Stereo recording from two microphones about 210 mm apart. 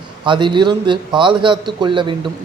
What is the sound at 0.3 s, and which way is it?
A man's voice, 20° right (ahead or behind).